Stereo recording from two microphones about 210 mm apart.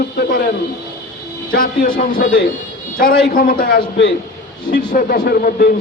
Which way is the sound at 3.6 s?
50° left (ahead or behind).